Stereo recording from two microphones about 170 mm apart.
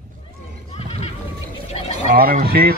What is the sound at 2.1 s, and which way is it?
Speech, 55° right (ahead or behind).